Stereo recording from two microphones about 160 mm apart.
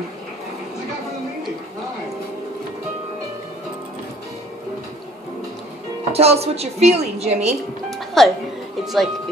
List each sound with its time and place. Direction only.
6.1 s a woman's voice: 40° right (ahead or behind)
7.9 s music: centre (ahead or behind)
8.8 s speech: centre (ahead or behind)